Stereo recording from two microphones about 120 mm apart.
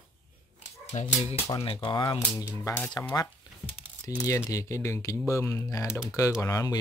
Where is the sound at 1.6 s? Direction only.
50° left (ahead or behind).